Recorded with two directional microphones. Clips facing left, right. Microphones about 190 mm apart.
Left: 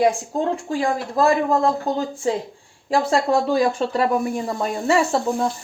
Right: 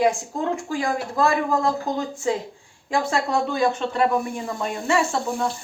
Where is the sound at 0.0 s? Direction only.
30° left (ahead or behind).